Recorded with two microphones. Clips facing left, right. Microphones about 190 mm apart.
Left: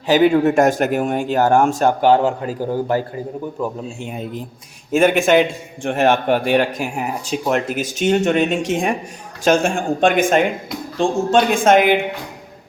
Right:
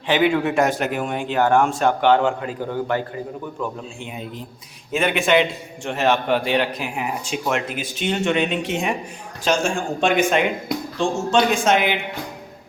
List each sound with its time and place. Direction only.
0.1 s a man's voice: 40° left (ahead or behind)